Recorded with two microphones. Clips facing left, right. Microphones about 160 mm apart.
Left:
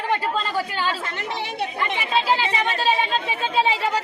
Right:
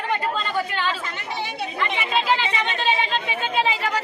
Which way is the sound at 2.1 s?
35° left (ahead or behind).